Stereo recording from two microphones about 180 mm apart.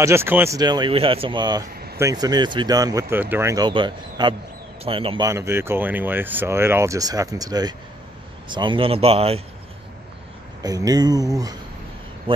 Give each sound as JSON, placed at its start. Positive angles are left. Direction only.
{"t": 0.0, "sound": "speech", "side_deg": -15}
{"t": 5.2, "sound": "speech", "side_deg": -15}
{"t": 10.6, "sound": "speech", "side_deg": -20}